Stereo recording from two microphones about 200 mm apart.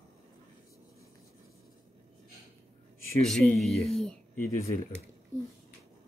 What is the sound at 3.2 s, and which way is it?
Speech, centre (ahead or behind).